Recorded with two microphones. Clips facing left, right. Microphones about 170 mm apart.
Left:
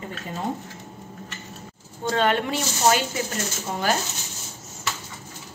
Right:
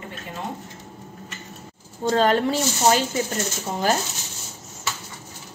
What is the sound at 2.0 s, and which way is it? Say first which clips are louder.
Speech: right 3 dB; 35° right (ahead or behind).